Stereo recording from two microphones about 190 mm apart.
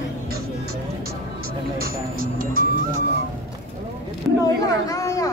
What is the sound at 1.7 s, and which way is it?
Music, 50° right (ahead or behind).